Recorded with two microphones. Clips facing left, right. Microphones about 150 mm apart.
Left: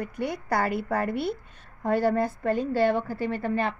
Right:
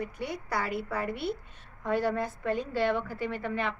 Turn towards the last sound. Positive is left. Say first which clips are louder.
# left 5 dB
turn(degrees=35)  # may be behind; listen again after turning